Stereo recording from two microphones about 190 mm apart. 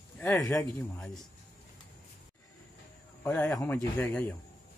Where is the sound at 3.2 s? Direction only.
15° left (ahead or behind).